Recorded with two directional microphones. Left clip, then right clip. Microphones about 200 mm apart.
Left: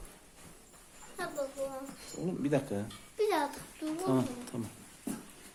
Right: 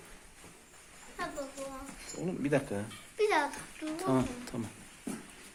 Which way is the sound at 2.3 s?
10° left (ahead or behind).